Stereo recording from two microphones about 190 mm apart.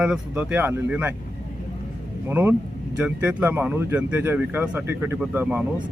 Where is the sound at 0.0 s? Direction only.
5° right (ahead or behind).